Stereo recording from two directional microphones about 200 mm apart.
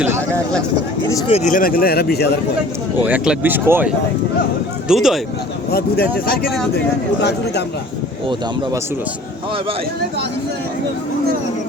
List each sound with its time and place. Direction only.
0.0 s speech: 15° right (ahead or behind)
1.3 s speech: 35° left (ahead or behind); by 2.4 s 55° left (ahead or behind)
3.0 s speech: 10° right (ahead or behind)
5.7 s a man's voice: 50° left (ahead or behind)